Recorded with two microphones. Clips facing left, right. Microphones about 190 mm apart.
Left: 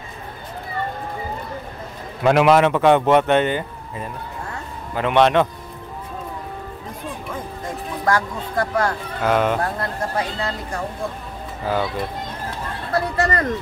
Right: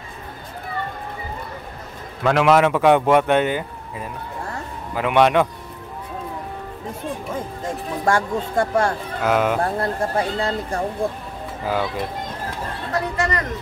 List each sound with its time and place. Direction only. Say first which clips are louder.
2.2 s a man's voice: left 2 dB; 10° left (ahead or behind)
2.5 s speech: even; 5° right (ahead or behind)
8.0 s speech: right 1 dB; 25° right (ahead or behind)
9.2 s speech: even; 5° right (ahead or behind)
9.6 s speech: right 3 dB; 25° right (ahead or behind)
12.9 s speech: left 3 dB; 35° left (ahead or behind)